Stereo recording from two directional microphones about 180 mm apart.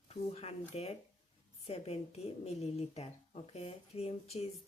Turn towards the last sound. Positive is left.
turn(degrees=35)  # may be behind; listen again after turning